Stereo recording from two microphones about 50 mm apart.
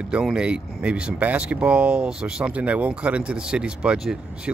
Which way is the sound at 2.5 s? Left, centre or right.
Right.